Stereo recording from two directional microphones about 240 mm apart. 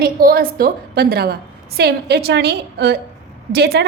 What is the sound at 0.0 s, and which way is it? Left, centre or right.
A woman's voice, right.